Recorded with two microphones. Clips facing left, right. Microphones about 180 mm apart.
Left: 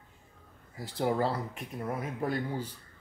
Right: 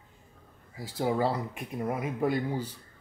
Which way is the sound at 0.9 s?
10° right (ahead or behind).